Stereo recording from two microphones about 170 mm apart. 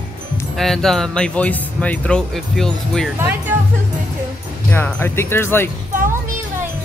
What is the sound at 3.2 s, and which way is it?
Speech, 10° right (ahead or behind).